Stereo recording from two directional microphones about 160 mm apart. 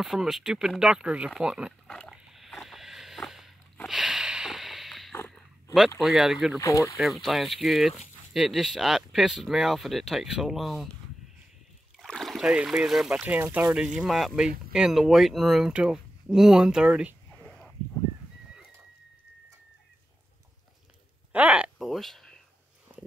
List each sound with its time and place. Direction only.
0.0 s speech: centre (ahead or behind)
2.0 s dog: centre (ahead or behind)
3.7 s a sound: centre (ahead or behind)
5.9 s speech: centre (ahead or behind)
6.6 s speech: 20° left (ahead or behind)
7.0 s speech: centre (ahead or behind)
12.0 s speech: centre (ahead or behind)
21.3 s a sound: 10° right (ahead or behind)